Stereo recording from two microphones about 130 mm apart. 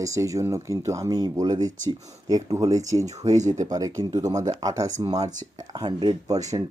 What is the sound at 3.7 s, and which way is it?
Speech, 25° right (ahead or behind).